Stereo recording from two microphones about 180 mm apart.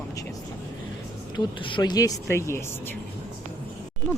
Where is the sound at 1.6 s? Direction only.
25° left (ahead or behind).